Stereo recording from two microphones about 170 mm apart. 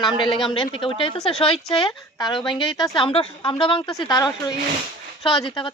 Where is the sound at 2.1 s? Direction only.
25° left (ahead or behind).